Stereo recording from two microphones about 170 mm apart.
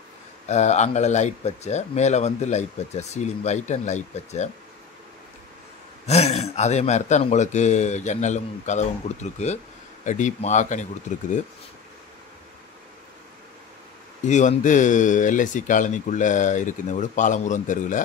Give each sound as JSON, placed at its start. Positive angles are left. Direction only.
{"t": 0.5, "sound": "speech", "side_deg": 40}
{"t": 6.0, "sound": "speech", "side_deg": 40}
{"t": 14.2, "sound": "speech", "side_deg": 45}